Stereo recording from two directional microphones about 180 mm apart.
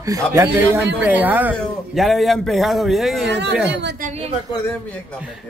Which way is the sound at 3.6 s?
75° right (ahead or behind).